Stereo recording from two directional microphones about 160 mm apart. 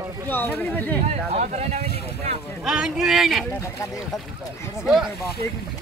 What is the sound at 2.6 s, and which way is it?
Speech, centre (ahead or behind).